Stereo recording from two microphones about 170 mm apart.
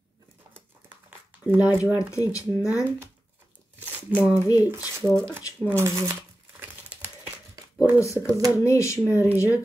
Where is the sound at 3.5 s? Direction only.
10° right (ahead or behind).